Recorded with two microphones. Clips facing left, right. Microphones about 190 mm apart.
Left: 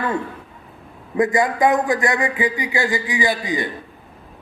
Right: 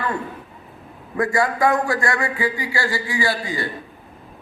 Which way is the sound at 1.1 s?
20° left (ahead or behind).